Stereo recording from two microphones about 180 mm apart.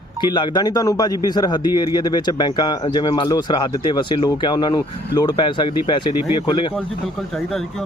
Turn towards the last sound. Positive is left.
turn(degrees=0)  # may be behind; listen again after turning